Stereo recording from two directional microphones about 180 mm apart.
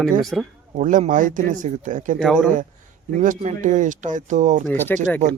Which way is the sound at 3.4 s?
45° right (ahead or behind).